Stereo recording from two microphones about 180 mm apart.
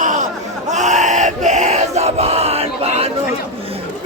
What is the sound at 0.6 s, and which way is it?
Battle cry, 40° right (ahead or behind).